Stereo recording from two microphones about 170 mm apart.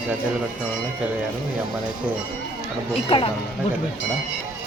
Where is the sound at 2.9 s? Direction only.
35° left (ahead or behind).